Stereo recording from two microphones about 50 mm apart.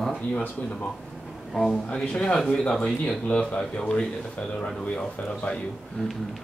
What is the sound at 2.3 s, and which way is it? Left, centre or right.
Speech, centre.